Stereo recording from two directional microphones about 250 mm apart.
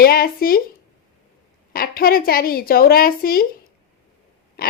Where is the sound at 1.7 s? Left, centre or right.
Left.